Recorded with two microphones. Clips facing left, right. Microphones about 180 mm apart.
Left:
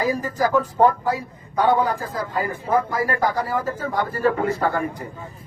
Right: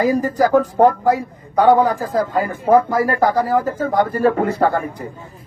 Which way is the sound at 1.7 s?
75° right (ahead or behind).